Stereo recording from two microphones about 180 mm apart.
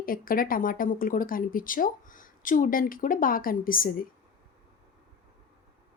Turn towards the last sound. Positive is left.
turn(degrees=50)  # may be behind; listen again after turning